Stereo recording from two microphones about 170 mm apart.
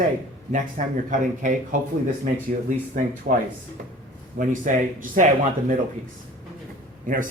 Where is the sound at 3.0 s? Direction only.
50° right (ahead or behind).